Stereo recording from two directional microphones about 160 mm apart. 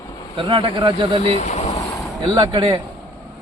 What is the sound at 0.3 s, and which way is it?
Speech, 30° right (ahead or behind).